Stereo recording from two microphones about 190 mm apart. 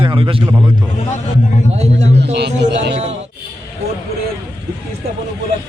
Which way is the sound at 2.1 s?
65° right (ahead or behind).